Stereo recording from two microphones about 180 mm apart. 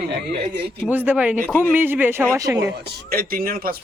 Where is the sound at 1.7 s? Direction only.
10° right (ahead or behind).